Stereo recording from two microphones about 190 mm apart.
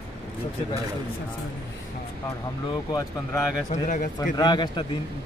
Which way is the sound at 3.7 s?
45° left (ahead or behind).